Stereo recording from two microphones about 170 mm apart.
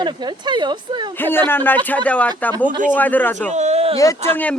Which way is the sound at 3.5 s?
40° right (ahead or behind).